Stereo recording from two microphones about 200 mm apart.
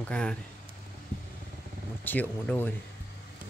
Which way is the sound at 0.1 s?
5° left (ahead or behind).